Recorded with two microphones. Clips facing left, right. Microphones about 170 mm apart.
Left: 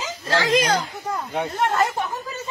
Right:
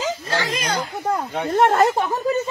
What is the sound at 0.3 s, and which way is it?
Speech, 90° left.